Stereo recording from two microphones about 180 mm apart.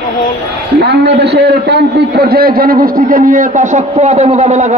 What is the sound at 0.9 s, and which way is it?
A man's voice, 65° right (ahead or behind).